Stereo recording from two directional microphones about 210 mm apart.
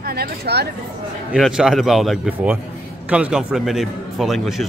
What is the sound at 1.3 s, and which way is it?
Speech, 5° right (ahead or behind).